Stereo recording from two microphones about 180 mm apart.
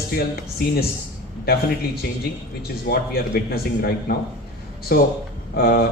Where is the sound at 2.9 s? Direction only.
60° left (ahead or behind).